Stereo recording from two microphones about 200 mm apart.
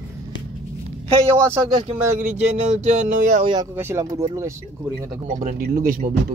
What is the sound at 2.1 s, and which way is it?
Speech, 35° right (ahead or behind).